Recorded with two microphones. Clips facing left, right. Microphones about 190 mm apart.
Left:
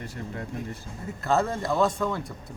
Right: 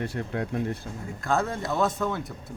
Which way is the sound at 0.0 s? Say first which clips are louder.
Right 6 dB; 65° right (ahead or behind).